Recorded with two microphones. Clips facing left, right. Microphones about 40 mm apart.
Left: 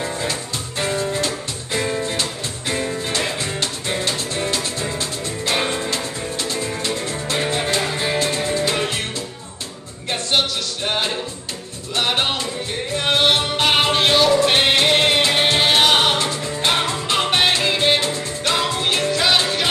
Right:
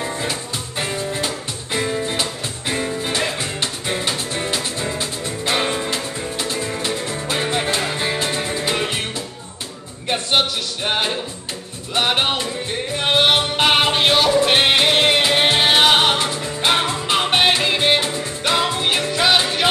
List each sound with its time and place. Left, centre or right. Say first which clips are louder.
0.0 s music: even; centre
5.6 s music: right 1 dB; centre
5.9 s music: even; right
7.8 s music: left 1 dB; centre
10.0 s music: right 1 dB; centre